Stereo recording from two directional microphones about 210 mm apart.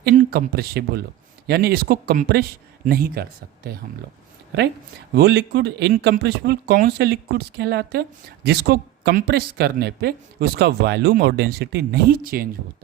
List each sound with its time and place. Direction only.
0.3 s speech: 50° right (ahead or behind)
5.1 s speech: 50° right (ahead or behind)